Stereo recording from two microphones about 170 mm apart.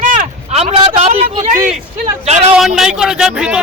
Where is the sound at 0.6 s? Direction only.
35° right (ahead or behind).